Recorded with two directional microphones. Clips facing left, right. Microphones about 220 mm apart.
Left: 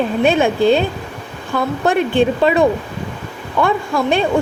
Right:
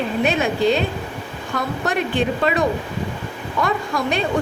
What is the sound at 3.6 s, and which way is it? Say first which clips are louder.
Speech: left 5 dB; 30° left (ahead or behind).